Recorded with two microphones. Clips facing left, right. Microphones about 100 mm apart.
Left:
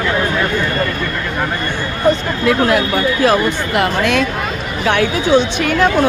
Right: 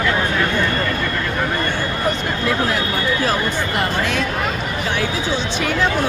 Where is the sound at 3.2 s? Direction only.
75° left (ahead or behind).